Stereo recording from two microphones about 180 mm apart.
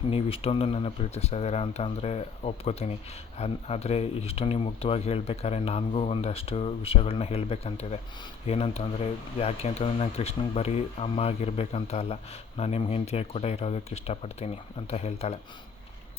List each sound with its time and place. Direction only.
0.1 s speech: 35° left (ahead or behind)